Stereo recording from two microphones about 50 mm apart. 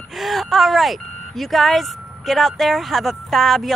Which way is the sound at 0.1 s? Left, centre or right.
Centre.